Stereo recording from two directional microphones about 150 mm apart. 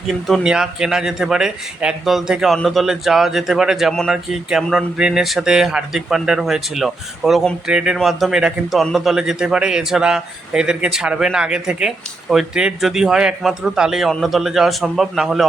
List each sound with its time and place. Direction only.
0.1 s speech: centre (ahead or behind)